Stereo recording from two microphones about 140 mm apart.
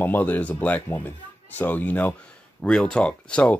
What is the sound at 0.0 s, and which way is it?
Speech, 10° left (ahead or behind).